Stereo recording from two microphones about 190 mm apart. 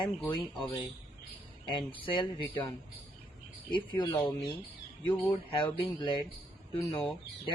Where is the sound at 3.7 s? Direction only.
25° left (ahead or behind).